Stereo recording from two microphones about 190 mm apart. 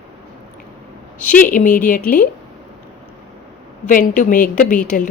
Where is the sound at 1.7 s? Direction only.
45° left (ahead or behind).